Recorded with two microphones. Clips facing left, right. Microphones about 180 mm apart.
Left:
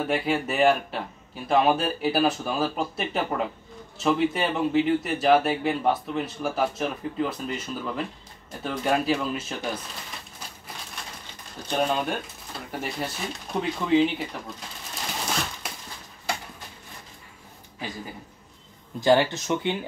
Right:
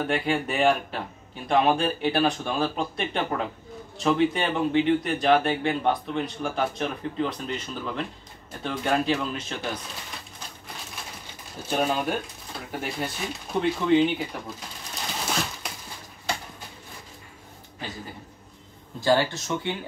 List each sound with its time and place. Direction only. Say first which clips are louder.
0.0 s speech: even; centre (ahead or behind)
11.6 s speech: even; 5° right (ahead or behind)
18.9 s speech: left 2 dB; 20° left (ahead or behind)